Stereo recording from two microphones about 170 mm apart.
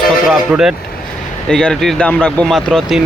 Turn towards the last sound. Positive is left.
turn(degrees=0)  # may be behind; listen again after turning